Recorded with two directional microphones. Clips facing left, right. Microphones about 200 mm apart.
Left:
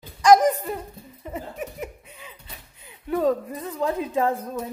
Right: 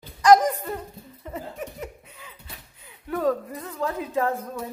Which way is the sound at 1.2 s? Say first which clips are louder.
Left 1 dB; 15° left (ahead or behind).